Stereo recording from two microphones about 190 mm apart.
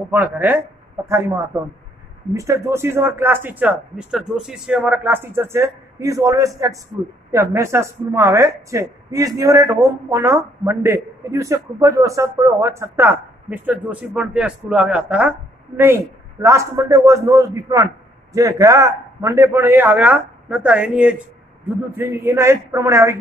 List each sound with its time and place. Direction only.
0.1 s speech: 10° right (ahead or behind)